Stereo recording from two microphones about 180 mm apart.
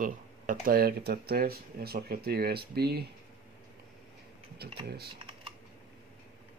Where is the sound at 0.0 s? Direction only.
50° right (ahead or behind).